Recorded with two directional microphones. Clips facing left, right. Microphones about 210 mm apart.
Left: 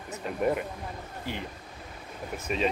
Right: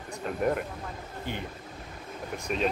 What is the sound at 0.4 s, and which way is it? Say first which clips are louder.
Speech: left 1 dB; 5° left (ahead or behind).